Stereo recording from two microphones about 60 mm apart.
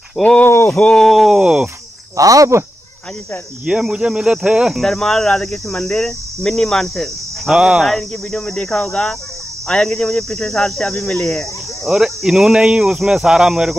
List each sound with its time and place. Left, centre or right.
0.2 s speech: left
0.9 s speech: centre
1.3 s speech: centre
2.1 s speech: right
3.6 s speech: centre
4.7 s speech: centre
7.5 s speech: centre
7.8 s speech: centre
11.9 s speech: centre